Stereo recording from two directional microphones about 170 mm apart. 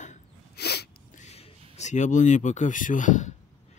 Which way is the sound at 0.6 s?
75° left (ahead or behind).